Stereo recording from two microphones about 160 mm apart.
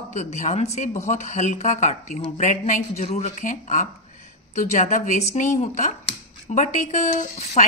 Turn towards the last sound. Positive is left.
turn(degrees=45)  # may be behind; listen again after turning